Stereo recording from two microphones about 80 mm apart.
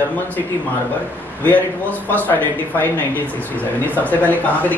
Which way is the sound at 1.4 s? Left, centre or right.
Left.